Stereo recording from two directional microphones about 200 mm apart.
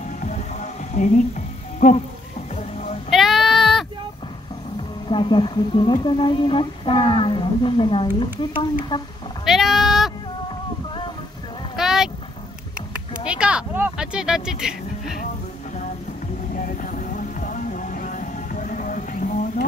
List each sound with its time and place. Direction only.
0.2 s music: 35° left (ahead or behind)
1.8 s speech: 35° left (ahead or behind)
3.1 s child singing: centre (ahead or behind)
5.0 s speech: 20° left (ahead or behind)
9.4 s meow: centre (ahead or behind)
11.7 s vehicle: centre (ahead or behind)
13.2 s speech: 5° right (ahead or behind)
16.6 s music: 40° left (ahead or behind)